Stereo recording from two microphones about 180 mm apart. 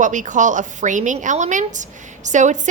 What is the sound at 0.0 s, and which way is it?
A woman's voice, 45° right (ahead or behind).